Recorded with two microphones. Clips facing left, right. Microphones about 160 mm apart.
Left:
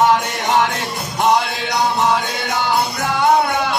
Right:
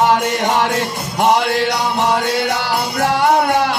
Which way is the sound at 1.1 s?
60° right (ahead or behind).